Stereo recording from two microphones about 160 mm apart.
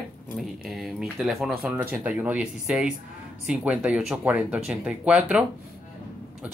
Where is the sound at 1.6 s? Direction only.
10° right (ahead or behind).